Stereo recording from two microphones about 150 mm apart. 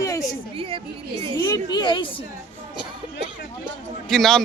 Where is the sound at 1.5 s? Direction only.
30° left (ahead or behind).